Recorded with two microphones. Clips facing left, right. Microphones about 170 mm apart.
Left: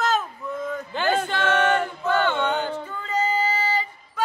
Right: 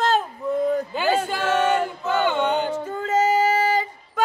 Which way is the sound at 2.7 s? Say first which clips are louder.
Right 5 dB; 45° right (ahead or behind).